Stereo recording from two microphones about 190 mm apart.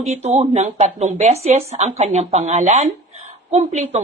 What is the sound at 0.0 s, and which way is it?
Speech, 35° right (ahead or behind).